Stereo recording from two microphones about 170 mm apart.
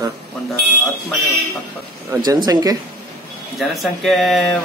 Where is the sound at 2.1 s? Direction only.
20° right (ahead or behind).